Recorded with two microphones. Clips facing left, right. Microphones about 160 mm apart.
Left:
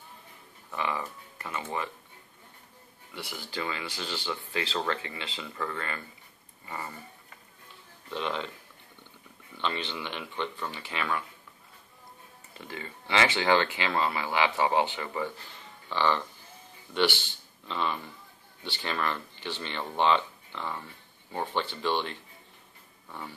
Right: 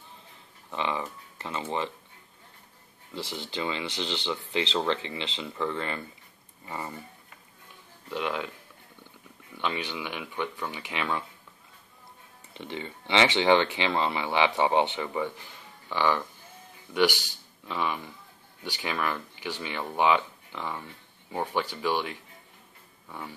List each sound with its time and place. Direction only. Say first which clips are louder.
0.7 s speech: right 2 dB; 20° right (ahead or behind)
3.2 s speech: right 3 dB; 25° right (ahead or behind)
8.1 s speech: right 2 dB; 10° right (ahead or behind)
9.6 s speech: right 1 dB; 10° right (ahead or behind)
12.5 s speech: right 4 dB; 20° right (ahead or behind)